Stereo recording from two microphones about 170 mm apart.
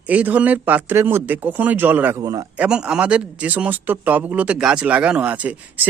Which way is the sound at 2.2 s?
20° right (ahead or behind).